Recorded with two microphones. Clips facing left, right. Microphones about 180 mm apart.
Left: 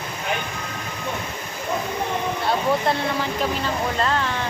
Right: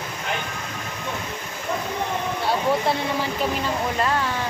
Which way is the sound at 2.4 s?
10° right (ahead or behind).